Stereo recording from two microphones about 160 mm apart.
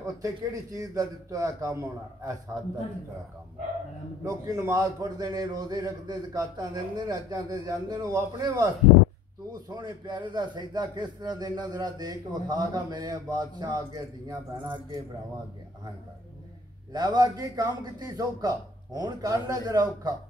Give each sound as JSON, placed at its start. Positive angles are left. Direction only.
{"t": 0.0, "sound": "a man's voice", "side_deg": -20}
{"t": 4.2, "sound": "a man's voice", "side_deg": -20}
{"t": 9.7, "sound": "a man's voice", "side_deg": -30}
{"t": 16.9, "sound": "a man's voice", "side_deg": -25}